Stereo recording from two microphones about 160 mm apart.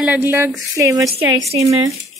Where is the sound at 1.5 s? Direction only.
40° right (ahead or behind).